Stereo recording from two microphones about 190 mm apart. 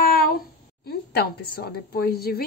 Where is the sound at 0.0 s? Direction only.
50° left (ahead or behind).